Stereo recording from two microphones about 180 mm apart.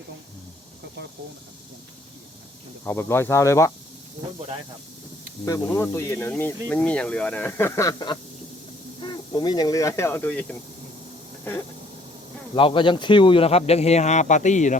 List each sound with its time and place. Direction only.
2.8 s speech: 10° left (ahead or behind)
5.5 s speech: 15° left (ahead or behind)
12.5 s speech: 30° left (ahead or behind)